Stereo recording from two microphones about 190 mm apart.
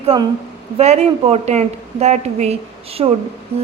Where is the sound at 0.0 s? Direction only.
30° right (ahead or behind).